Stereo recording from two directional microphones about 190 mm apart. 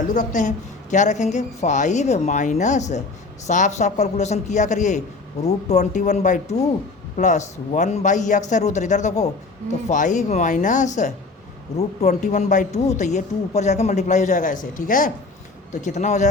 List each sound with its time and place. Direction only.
0.1 s speech: 40° left (ahead or behind)